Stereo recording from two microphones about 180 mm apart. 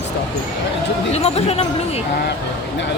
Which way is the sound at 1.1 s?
35° left (ahead or behind).